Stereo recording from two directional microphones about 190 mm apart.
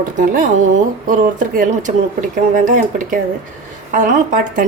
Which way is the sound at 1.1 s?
45° right (ahead or behind).